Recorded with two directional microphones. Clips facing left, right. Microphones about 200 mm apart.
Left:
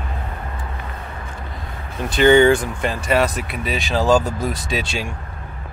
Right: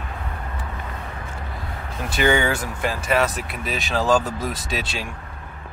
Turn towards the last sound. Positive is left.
turn(degrees=0)  # may be behind; listen again after turning